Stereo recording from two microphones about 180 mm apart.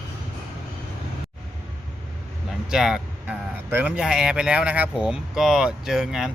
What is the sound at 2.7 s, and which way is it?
Speech, 5° right (ahead or behind).